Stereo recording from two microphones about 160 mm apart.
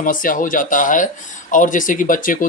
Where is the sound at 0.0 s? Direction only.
60° left (ahead or behind).